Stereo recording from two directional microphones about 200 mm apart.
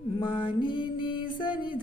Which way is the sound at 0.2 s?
25° left (ahead or behind).